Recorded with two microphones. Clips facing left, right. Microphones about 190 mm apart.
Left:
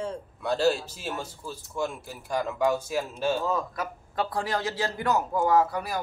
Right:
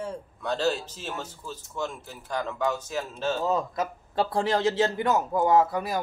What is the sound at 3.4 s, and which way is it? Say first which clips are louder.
Speech: right 2 dB; 25° right (ahead or behind).